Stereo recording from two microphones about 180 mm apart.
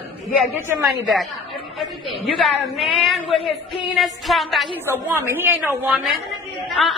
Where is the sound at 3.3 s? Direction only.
30° left (ahead or behind).